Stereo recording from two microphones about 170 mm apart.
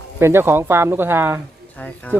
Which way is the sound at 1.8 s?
5° left (ahead or behind).